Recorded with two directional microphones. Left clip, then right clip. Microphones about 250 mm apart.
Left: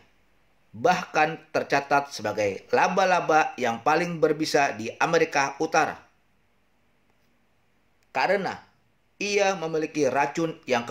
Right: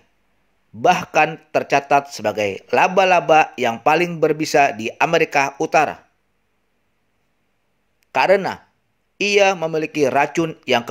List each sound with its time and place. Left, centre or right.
0.7 s speech: right
8.1 s speech: right